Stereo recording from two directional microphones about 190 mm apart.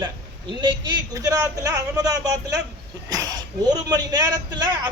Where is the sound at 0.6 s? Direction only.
20° right (ahead or behind).